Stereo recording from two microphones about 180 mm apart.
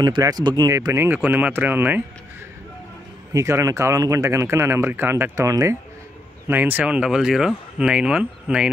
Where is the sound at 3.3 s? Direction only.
15° right (ahead or behind).